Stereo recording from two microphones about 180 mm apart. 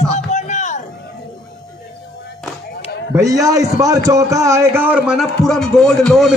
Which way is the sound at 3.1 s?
20° right (ahead or behind).